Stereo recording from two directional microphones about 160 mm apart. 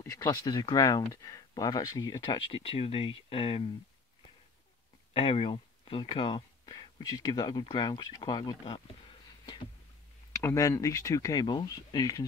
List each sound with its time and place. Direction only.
0.0 s speech: 20° left (ahead or behind); by 3.6 s 35° left (ahead or behind)
5.1 s speech: 35° left (ahead or behind)
10.4 s speech: 15° left (ahead or behind)